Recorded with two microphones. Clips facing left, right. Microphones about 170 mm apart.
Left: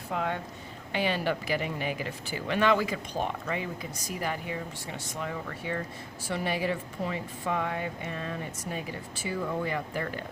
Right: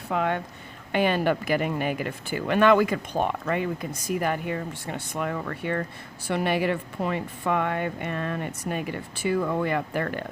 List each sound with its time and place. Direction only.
0.1 s speech: 65° right (ahead or behind)
0.9 s speech: 55° right (ahead or behind)